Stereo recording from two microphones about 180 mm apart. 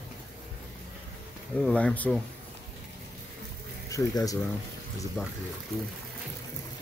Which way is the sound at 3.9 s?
20° left (ahead or behind).